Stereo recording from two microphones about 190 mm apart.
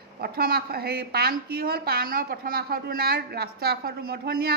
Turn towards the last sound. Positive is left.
turn(degrees=-55)  # may be behind; listen again after turning